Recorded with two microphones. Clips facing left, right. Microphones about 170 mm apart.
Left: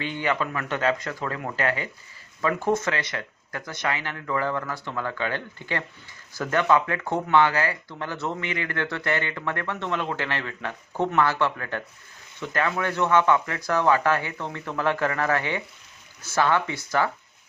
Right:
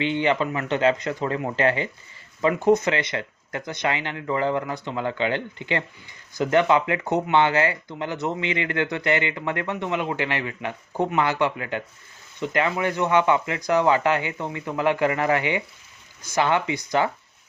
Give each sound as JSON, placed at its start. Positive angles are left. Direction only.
{"t": 0.2, "sound": "speech", "side_deg": -25}